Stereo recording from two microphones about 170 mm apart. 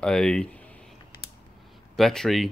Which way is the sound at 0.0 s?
5° left (ahead or behind).